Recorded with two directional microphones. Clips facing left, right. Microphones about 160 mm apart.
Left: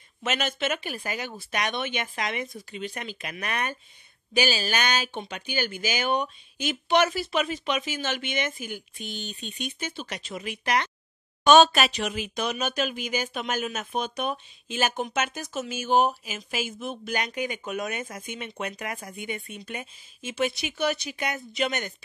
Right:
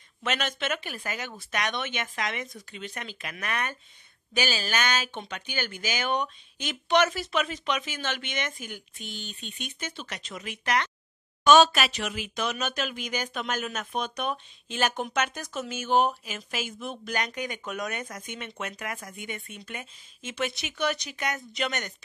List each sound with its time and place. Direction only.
0.2 s speech: 10° left (ahead or behind)
11.4 s speech: 25° left (ahead or behind)
18.7 s speech: 30° left (ahead or behind)
19.2 s speech: 15° left (ahead or behind)